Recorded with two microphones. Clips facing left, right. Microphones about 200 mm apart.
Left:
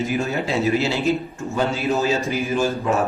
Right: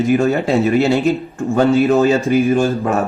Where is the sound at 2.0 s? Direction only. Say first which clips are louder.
Right 9 dB; 55° right (ahead or behind).